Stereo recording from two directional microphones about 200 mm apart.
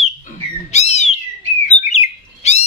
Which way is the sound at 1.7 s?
35° left (ahead or behind).